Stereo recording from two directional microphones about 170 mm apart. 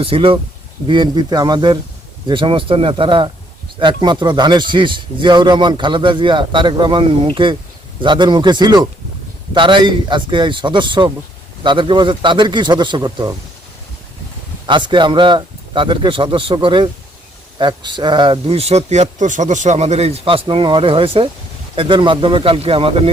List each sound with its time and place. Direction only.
0.0 s speech: 35° right (ahead or behind)
14.7 s speech: 25° right (ahead or behind)